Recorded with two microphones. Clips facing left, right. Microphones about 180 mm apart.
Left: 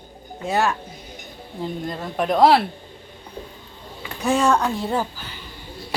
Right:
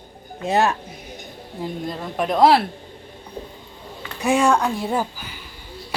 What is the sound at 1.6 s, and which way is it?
A woman's voice, centre (ahead or behind).